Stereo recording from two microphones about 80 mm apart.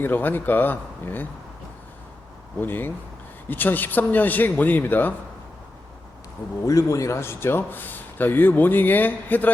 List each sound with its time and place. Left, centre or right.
0.0 s speech: left
2.6 s speech: left
6.7 s speech: left